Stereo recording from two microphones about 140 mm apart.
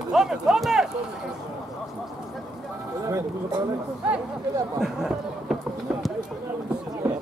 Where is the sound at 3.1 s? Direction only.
30° right (ahead or behind).